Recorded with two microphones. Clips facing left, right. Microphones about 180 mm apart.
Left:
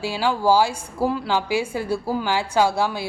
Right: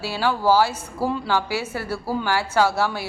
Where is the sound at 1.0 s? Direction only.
Centre (ahead or behind).